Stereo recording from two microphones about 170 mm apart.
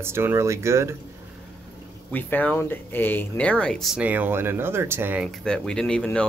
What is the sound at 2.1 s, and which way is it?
Speech, 10° left (ahead or behind).